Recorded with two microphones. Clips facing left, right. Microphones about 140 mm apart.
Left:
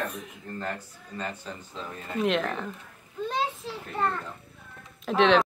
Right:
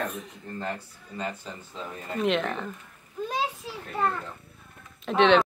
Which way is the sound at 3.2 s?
5° right (ahead or behind).